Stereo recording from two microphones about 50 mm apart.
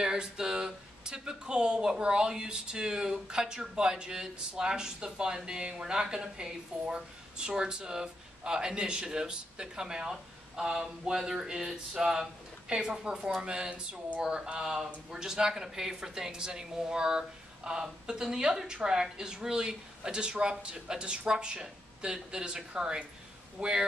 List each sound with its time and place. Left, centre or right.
0.0 s a man's voice: centre